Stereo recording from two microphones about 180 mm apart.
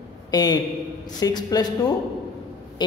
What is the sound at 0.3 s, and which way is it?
A man's voice, 20° left (ahead or behind).